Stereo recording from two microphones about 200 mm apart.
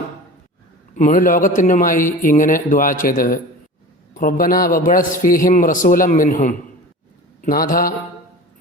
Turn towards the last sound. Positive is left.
turn(degrees=45)  # may be behind; listen again after turning